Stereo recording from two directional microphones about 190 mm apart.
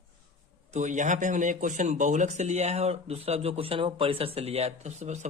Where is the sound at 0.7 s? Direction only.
40° right (ahead or behind).